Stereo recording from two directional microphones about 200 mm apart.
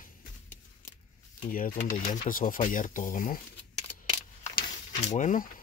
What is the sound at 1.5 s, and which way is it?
Speech, 45° left (ahead or behind).